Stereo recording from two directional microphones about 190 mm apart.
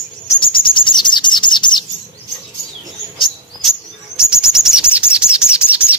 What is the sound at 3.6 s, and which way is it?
Bird, 5° right (ahead or behind).